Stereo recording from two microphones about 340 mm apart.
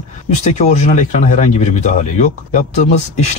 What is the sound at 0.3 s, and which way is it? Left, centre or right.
Speech, left.